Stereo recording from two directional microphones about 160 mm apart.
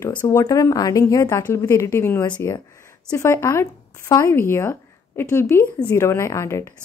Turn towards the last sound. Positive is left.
turn(degrees=15)  # may be behind; listen again after turning